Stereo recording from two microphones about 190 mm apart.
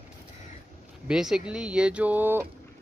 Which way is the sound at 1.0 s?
5° right (ahead or behind).